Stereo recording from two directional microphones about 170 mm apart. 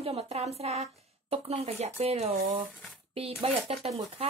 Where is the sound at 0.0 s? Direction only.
35° right (ahead or behind).